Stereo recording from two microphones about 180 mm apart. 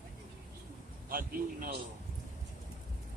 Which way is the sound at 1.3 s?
55° right (ahead or behind).